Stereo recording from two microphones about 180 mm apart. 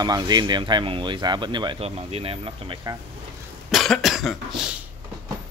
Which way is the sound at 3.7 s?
Centre (ahead or behind).